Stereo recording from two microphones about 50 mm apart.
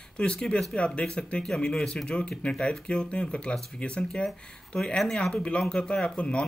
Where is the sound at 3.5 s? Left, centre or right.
Centre.